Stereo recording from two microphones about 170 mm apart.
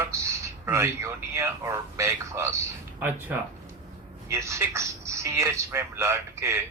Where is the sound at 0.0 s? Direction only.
15° right (ahead or behind).